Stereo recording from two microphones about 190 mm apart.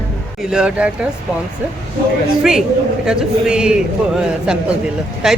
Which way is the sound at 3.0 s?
5° right (ahead or behind).